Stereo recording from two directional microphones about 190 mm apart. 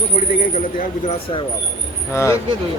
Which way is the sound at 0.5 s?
40° left (ahead or behind).